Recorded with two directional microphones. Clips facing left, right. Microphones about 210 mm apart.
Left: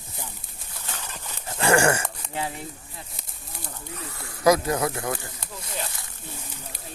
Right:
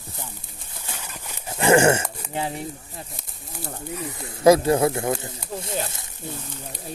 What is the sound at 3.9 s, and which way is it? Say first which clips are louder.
Speech: right 6 dB; 15° right (ahead or behind).